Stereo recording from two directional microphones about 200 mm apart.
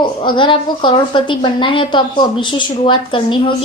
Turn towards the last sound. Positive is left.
turn(degrees=25)  # may be behind; listen again after turning